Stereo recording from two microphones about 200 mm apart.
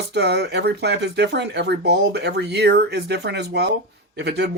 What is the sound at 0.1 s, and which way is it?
Speech, 55° right (ahead or behind).